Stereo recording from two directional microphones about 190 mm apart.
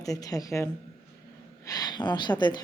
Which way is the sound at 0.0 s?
20° left (ahead or behind).